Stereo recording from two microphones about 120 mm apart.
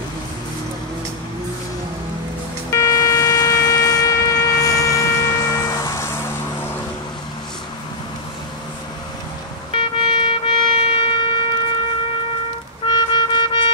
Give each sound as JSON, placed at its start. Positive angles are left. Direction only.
{"t": 2.7, "sound": "shofar", "side_deg": 25}
{"t": 9.8, "sound": "siren", "side_deg": 45}
{"t": 12.8, "sound": "music", "side_deg": 40}